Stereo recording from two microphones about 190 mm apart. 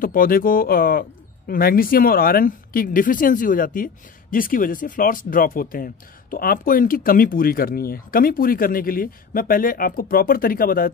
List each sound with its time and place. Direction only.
0.0 s speech: 50° left (ahead or behind)